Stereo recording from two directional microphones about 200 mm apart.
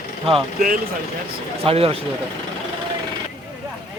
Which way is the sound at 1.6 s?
30° right (ahead or behind).